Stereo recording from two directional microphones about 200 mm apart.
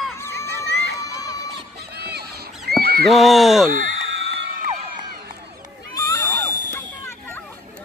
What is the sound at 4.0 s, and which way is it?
Music, 60° right (ahead or behind).